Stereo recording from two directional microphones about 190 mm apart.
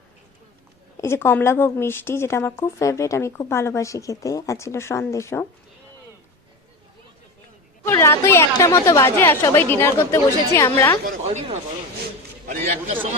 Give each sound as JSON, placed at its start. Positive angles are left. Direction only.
{"t": 1.0, "sound": "a woman's voice", "side_deg": 15}
{"t": 7.9, "sound": "a woman's voice", "side_deg": 15}
{"t": 11.0, "sound": "speech", "side_deg": -40}